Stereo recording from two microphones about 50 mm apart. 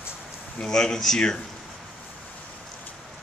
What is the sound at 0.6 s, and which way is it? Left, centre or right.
Speech, centre.